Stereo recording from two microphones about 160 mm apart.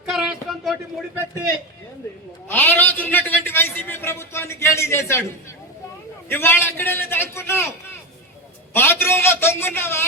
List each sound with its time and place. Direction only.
0.0 s a sound: 5° right (ahead or behind)
2.5 s a man's voice: 10° left (ahead or behind)
6.2 s a man's voice: 15° left (ahead or behind)
8.7 s a man's voice: 15° left (ahead or behind)